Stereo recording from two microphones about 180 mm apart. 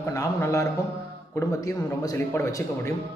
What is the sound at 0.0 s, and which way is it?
Speech, 15° left (ahead or behind).